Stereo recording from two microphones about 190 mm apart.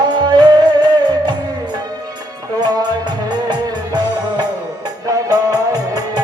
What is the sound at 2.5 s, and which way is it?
Music, 20° right (ahead or behind).